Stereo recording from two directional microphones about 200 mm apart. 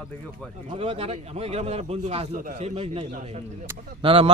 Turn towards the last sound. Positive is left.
turn(degrees=-25)  # may be behind; listen again after turning